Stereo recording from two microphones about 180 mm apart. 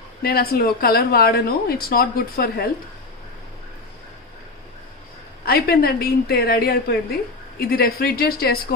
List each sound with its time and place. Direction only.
0.2 s a woman's voice: 60° left (ahead or behind)
5.4 s a woman's voice: 60° left (ahead or behind)